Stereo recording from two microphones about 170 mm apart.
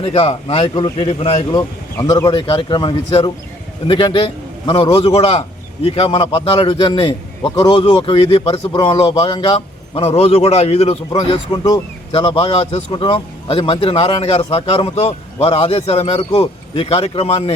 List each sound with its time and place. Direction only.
0.0 s a man's voice: 35° left (ahead or behind)
1.5 s a man's voice: 25° left (ahead or behind)